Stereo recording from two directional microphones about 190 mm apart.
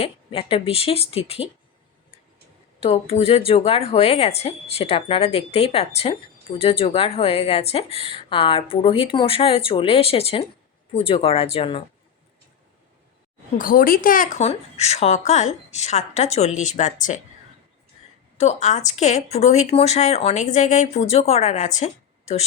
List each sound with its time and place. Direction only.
0.0 s speech: 30° left (ahead or behind)
2.8 s speech: 30° left (ahead or behind)
13.6 s speech: 50° left (ahead or behind)
18.3 s speech: 35° left (ahead or behind)